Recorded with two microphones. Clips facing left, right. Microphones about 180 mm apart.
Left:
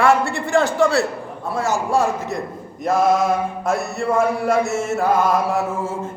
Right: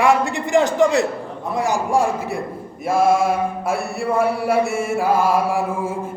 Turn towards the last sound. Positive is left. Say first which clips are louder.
# even
turn(degrees=-10)  # may be behind; listen again after turning